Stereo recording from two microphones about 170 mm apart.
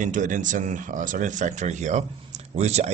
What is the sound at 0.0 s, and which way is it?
Speech, 50° right (ahead or behind).